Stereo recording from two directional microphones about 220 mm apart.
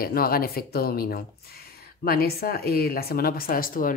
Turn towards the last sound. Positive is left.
turn(degrees=40)  # may be behind; listen again after turning